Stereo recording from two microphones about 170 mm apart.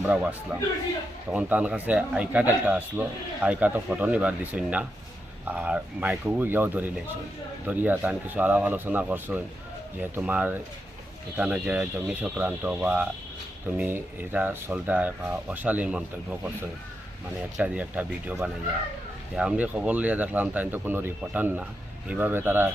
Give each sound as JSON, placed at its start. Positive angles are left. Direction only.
{"t": 0.0, "sound": "a man's voice", "side_deg": -5}
{"t": 17.6, "sound": "a man's voice", "side_deg": -10}